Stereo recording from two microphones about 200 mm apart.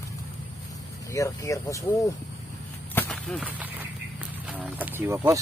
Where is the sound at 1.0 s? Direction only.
15° left (ahead or behind).